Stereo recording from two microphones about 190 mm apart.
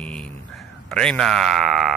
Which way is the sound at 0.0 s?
5° left (ahead or behind).